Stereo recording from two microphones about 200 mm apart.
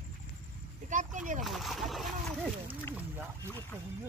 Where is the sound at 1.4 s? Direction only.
Centre (ahead or behind).